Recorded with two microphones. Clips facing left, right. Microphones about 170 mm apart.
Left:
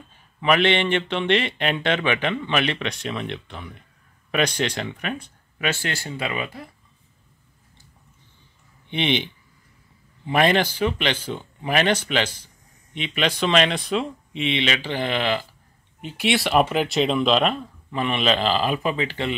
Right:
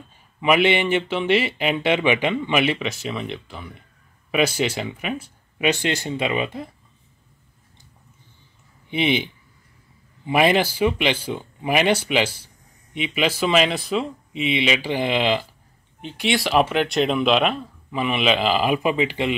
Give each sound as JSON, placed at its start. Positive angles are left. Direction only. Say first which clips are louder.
{"t": 0.4, "sound": "speech", "louder": "right 1 dB", "side_deg": -10}
{"t": 5.6, "sound": "speech", "louder": "right 5 dB", "side_deg": -20}
{"t": 8.9, "sound": "speech", "louder": "right 2 dB", "side_deg": -5}
{"t": 16.0, "sound": "speech", "louder": "even", "side_deg": 5}